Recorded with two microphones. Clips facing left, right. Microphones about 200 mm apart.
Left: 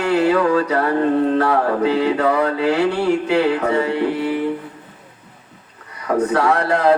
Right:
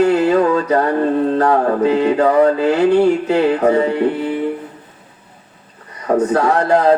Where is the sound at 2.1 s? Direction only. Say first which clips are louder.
Right 5 dB; 30° right (ahead or behind).